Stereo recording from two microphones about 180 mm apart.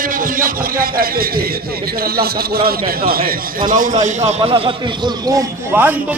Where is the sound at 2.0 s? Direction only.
55° right (ahead or behind); by 5.9 s 15° right (ahead or behind).